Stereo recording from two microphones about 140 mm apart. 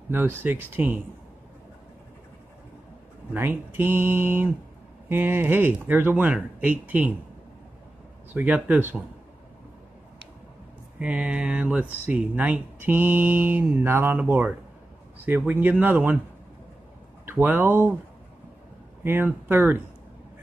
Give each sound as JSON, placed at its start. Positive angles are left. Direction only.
{"t": 0.4, "sound": "speech", "side_deg": -15}
{"t": 3.3, "sound": "speech", "side_deg": -15}
{"t": 8.3, "sound": "speech", "side_deg": -10}
{"t": 11.0, "sound": "speech", "side_deg": -10}
{"t": 17.3, "sound": "speech", "side_deg": -15}
{"t": 19.0, "sound": "speech", "side_deg": -15}